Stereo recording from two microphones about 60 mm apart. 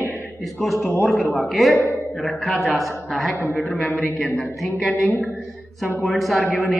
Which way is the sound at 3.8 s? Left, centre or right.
Left.